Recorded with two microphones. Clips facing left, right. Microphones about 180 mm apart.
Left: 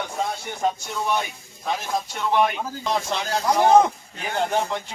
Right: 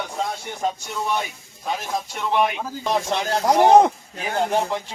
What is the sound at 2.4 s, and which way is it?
A man's voice, 10° right (ahead or behind).